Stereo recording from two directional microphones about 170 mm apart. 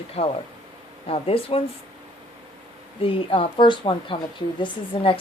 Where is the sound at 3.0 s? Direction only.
30° left (ahead or behind).